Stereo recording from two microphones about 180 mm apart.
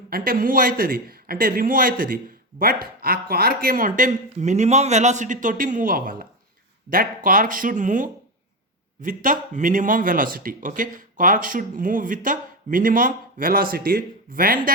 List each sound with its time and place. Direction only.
0.1 s speech: 50° right (ahead or behind)